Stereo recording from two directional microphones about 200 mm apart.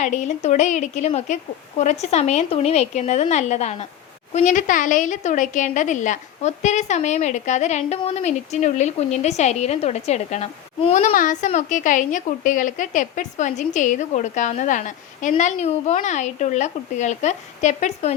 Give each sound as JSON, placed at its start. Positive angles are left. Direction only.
{"t": 0.0, "sound": "a woman's voice", "side_deg": 35}